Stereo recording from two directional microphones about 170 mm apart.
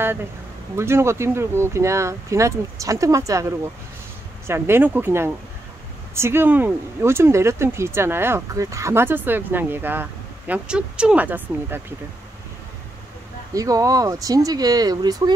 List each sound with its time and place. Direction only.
0.7 s speech: 15° right (ahead or behind)
4.5 s speech: 15° right (ahead or behind)
13.6 s speech: 20° right (ahead or behind)